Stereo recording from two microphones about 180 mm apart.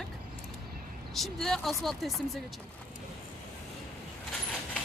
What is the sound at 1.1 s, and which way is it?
A woman's voice, centre (ahead or behind).